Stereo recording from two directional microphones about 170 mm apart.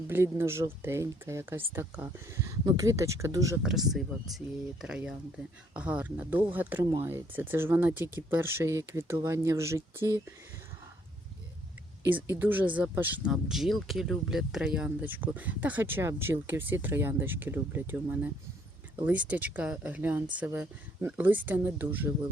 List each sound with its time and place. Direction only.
0.1 s speech: 15° right (ahead or behind)
3.6 s speech: centre (ahead or behind)
12.4 s speech: 10° right (ahead or behind)